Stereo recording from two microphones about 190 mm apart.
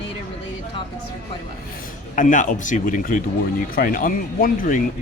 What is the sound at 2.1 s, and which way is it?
A man's voice, 45° left (ahead or behind).